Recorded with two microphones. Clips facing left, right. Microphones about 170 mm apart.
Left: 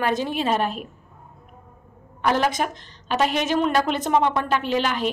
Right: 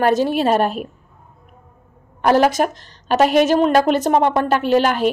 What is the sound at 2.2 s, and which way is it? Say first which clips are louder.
A woman's voice: right 7 dB; 40° right (ahead or behind).